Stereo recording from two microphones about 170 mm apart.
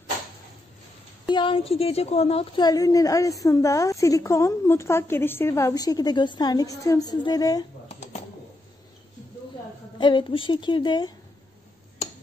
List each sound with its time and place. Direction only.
1.3 s a woman's voice: 30° left (ahead or behind)
7.9 s typing: 45° left (ahead or behind)
9.9 s a woman's voice: 30° left (ahead or behind)